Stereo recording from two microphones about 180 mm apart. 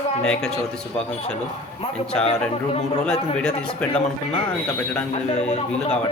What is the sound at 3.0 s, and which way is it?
Speech, 5° left (ahead or behind).